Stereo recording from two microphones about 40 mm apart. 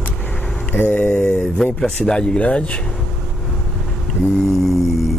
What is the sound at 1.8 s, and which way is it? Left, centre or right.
Speech, centre.